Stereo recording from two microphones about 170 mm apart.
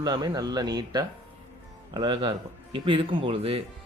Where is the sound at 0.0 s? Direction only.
25° right (ahead or behind).